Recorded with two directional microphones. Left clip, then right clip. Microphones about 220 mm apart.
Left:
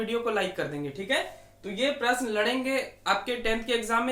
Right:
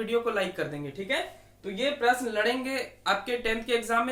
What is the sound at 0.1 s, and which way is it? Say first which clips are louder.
Speech: right 2 dB; 10° right (ahead or behind).